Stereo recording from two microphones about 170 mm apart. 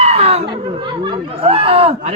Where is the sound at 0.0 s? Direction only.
35° right (ahead or behind).